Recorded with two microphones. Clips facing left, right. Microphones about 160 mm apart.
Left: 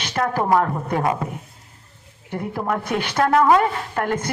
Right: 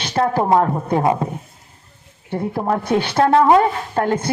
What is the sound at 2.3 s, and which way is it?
A woman's voice, 35° right (ahead or behind).